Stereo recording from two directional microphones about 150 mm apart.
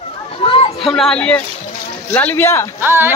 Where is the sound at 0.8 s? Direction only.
5° left (ahead or behind).